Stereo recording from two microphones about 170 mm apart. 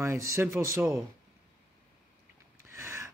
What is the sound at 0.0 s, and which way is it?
Speech, 15° right (ahead or behind).